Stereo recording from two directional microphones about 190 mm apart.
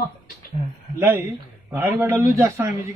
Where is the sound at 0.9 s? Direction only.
10° right (ahead or behind).